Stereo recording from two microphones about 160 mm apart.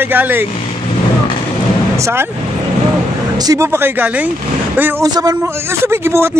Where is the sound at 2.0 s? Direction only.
20° right (ahead or behind).